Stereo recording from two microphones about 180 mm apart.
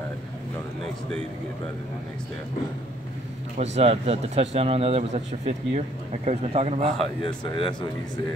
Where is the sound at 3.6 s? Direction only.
35° right (ahead or behind).